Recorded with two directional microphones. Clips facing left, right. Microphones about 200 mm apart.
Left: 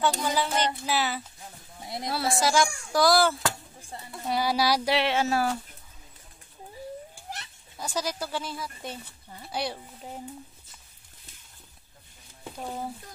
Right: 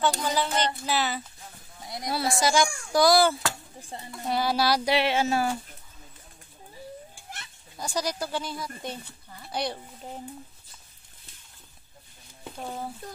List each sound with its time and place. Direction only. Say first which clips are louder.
0.0 s child singing: even; 5° left (ahead or behind)
1.8 s sheep: left 2 dB; 25° left (ahead or behind)
2.4 s speech: right 1 dB; centre (ahead or behind)
4.3 s child singing: even; 10° left (ahead or behind)
4.9 s speech: right 1 dB; centre (ahead or behind)
7.8 s speech: right 1 dB; 5° left (ahead or behind)
12.5 s speech: left 1 dB; 5° left (ahead or behind)